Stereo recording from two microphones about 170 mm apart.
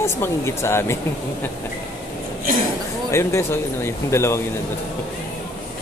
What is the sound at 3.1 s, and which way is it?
Speech, 15° left (ahead or behind).